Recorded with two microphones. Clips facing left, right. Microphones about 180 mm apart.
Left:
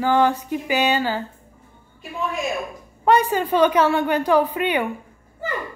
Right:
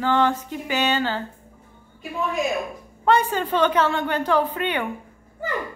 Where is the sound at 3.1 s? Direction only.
10° left (ahead or behind).